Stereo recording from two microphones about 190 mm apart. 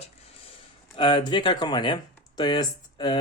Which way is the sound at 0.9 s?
25° left (ahead or behind).